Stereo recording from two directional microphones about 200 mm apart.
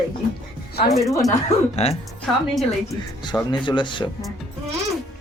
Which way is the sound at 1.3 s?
35° left (ahead or behind).